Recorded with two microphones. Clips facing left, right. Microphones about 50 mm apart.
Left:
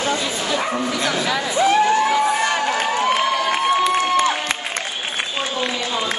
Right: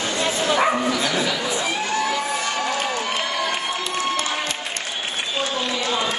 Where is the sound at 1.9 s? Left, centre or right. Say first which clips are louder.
Left 6 dB; centre.